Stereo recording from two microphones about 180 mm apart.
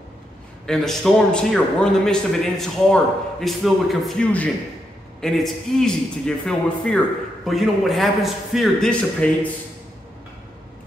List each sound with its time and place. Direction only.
0.7 s a man's voice: centre (ahead or behind)